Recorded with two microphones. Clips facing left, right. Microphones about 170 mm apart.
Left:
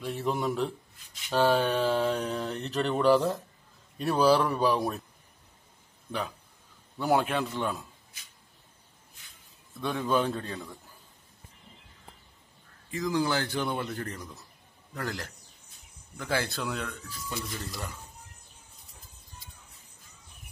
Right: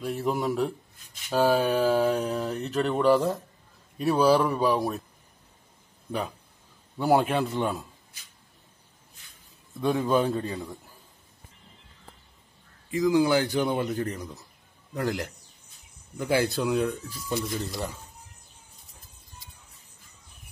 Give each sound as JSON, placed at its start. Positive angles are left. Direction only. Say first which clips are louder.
{"t": 0.0, "sound": "speech", "louder": "right 2 dB", "side_deg": -5}
{"t": 7.0, "sound": "speech", "louder": "right 4 dB", "side_deg": -10}
{"t": 9.8, "sound": "speech", "louder": "right 4 dB", "side_deg": -10}
{"t": 12.9, "sound": "speech", "louder": "right 7 dB", "side_deg": -15}